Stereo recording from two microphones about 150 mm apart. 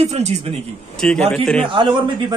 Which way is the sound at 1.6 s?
35° right (ahead or behind).